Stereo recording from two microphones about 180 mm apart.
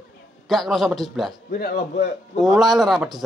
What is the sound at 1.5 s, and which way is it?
Speech, 60° left (ahead or behind).